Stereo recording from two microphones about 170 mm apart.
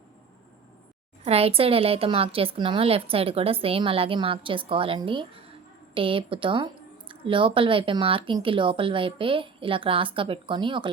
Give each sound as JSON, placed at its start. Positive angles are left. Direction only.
{"t": 1.2, "sound": "speech", "side_deg": -35}